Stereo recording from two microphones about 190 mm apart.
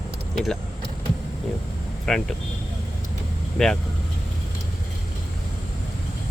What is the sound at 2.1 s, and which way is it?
Speech, 5° left (ahead or behind).